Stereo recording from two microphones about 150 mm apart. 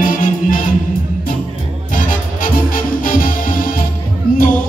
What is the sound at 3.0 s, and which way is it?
Music, 65° left (ahead or behind).